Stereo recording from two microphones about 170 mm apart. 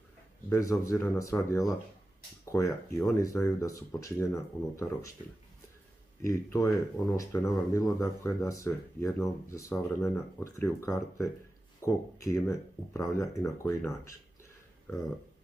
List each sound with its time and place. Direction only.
0.5 s speech: 20° left (ahead or behind)
6.2 s speech: 15° left (ahead or behind)